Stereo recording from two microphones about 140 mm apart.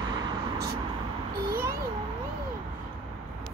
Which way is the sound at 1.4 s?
90° right.